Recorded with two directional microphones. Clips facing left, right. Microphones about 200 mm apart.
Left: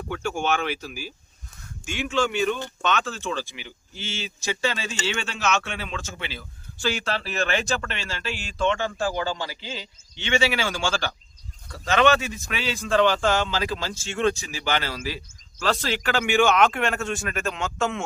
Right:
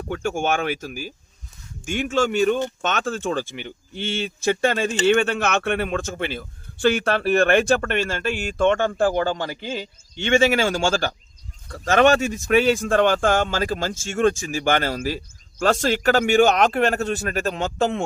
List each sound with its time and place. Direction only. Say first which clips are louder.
0.1 s speech: right 3 dB; 50° right (ahead or behind)